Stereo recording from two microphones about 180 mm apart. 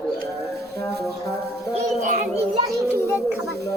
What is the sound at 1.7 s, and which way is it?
Speech, 45° right (ahead or behind).